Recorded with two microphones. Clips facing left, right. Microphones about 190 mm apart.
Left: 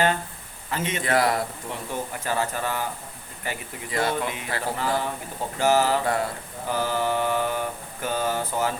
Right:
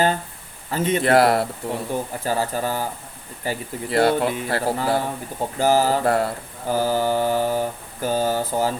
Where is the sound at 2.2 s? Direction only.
35° right (ahead or behind).